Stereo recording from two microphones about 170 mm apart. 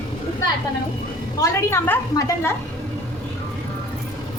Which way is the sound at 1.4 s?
15° left (ahead or behind).